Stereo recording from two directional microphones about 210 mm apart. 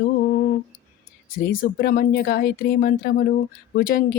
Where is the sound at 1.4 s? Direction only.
45° left (ahead or behind).